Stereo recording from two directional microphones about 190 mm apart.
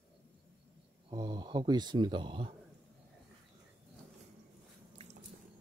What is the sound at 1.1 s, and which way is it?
Speech, 20° right (ahead or behind).